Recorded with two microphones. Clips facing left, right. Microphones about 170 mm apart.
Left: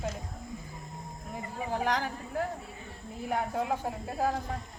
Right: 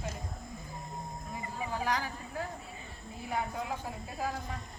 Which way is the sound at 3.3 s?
60° left (ahead or behind).